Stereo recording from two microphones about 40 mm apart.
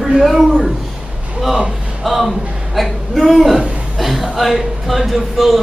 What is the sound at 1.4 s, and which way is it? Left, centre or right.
A man's voice, centre.